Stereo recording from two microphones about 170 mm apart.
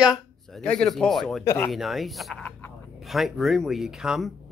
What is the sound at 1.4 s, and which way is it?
Speech, 15° left (ahead or behind).